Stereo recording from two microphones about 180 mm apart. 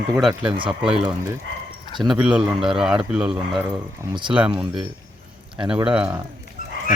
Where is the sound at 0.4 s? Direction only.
30° right (ahead or behind).